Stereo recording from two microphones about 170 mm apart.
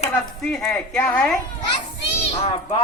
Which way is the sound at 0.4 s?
5° left (ahead or behind).